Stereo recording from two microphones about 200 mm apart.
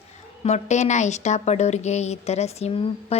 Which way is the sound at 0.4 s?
35° left (ahead or behind).